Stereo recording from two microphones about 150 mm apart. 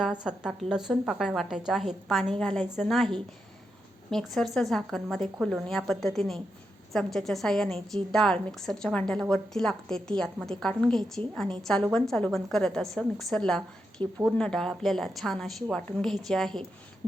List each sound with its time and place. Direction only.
0.3 s speech: 5° right (ahead or behind)
4.1 s speech: centre (ahead or behind)
14.0 s speech: 35° right (ahead or behind)
14.3 s speech: 5° left (ahead or behind)